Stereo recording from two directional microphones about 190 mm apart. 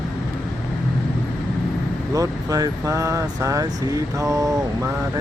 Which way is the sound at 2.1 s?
20° right (ahead or behind).